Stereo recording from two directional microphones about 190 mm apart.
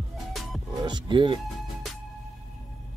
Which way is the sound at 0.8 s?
25° right (ahead or behind).